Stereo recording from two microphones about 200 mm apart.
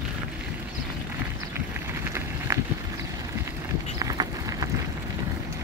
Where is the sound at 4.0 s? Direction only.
20° right (ahead or behind).